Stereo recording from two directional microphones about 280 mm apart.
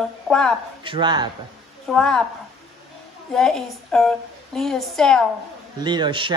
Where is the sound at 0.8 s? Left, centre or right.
Centre.